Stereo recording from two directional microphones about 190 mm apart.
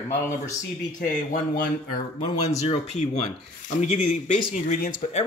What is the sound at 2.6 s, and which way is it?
Speech, 35° left (ahead or behind).